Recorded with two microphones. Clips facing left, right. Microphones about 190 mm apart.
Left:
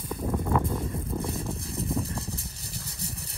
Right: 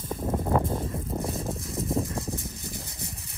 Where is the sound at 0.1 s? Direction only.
30° right (ahead or behind).